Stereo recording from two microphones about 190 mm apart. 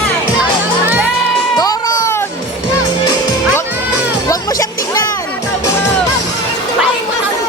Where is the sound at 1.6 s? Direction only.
20° left (ahead or behind).